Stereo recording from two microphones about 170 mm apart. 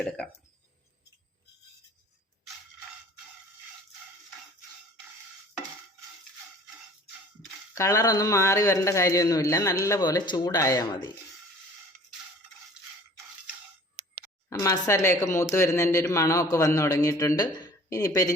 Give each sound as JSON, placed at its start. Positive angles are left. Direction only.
{"t": 7.8, "sound": "speech", "side_deg": 20}
{"t": 14.6, "sound": "speech", "side_deg": 20}